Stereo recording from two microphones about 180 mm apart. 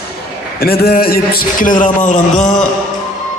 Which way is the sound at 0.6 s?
60° left (ahead or behind).